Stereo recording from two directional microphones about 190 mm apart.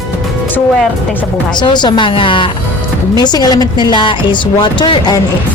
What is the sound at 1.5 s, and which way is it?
A woman's voice, 25° left (ahead or behind).